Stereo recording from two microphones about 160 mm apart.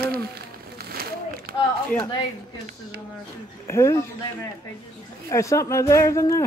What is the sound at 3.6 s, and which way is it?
Speech, 15° left (ahead or behind).